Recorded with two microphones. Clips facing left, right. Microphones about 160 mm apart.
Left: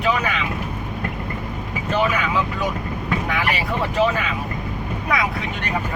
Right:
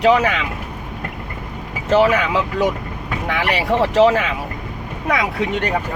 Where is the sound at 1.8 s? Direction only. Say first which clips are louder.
Right 7 dB; 90° right.